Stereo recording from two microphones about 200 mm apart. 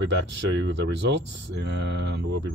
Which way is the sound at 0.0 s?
60° right (ahead or behind).